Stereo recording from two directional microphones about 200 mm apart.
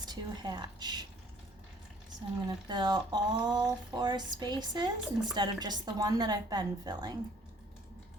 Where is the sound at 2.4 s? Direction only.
20° right (ahead or behind).